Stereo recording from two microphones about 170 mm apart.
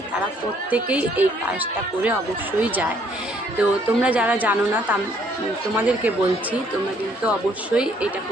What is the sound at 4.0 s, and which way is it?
Speech, 10° right (ahead or behind).